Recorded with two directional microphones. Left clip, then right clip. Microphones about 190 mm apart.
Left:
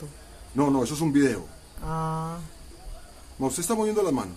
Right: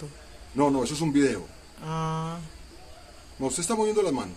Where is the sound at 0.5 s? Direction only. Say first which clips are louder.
Even; 15° left (ahead or behind).